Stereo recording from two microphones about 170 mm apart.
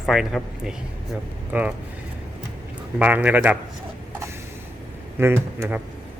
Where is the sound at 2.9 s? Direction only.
10° right (ahead or behind).